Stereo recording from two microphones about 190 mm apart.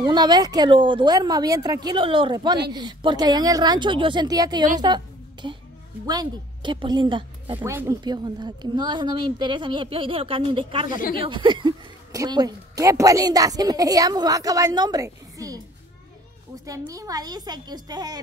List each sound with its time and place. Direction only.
0.0 s a woman's voice: 25° right (ahead or behind)
7.5 s speech: 15° right (ahead or behind)
11.0 s speech: 50° left (ahead or behind)
11.2 s speech: 25° right (ahead or behind)
16.6 s speech: 20° right (ahead or behind)